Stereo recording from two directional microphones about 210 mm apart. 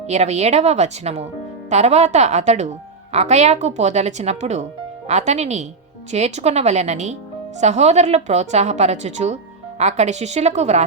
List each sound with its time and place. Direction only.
0.1 s a woman's voice: 30° right (ahead or behind)